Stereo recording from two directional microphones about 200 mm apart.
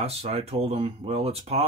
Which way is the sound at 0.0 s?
30° right (ahead or behind).